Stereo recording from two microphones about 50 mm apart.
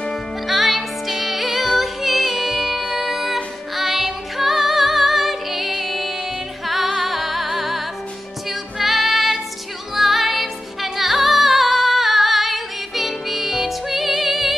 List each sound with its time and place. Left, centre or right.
0.5 s music: centre